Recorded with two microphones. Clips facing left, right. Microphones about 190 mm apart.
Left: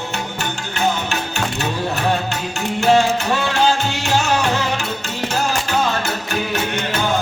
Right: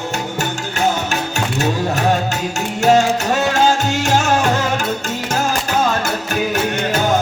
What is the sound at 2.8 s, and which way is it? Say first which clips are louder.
Music: right 2 dB; 45° right (ahead or behind).